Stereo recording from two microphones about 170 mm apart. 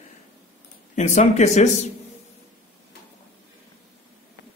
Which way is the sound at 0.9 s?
45° left (ahead or behind).